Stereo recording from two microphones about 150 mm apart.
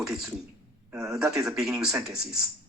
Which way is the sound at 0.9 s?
20° right (ahead or behind).